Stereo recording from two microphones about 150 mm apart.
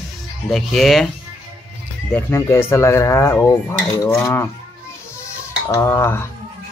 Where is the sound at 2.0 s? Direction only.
15° left (ahead or behind).